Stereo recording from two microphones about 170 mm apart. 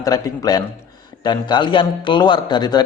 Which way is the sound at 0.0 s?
20° left (ahead or behind).